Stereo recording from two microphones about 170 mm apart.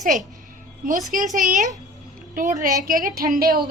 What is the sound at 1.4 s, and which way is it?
A woman's voice, 50° right (ahead or behind).